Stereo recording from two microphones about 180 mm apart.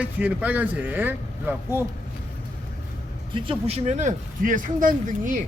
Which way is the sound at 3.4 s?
30° right (ahead or behind).